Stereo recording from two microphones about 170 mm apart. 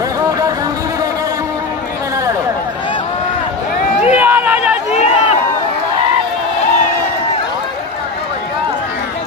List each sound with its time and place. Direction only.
4.0 s run: 10° right (ahead or behind)